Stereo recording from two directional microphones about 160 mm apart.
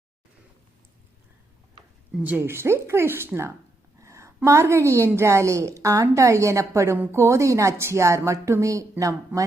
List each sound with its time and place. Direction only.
2.1 s a woman's voice: 10° right (ahead or behind)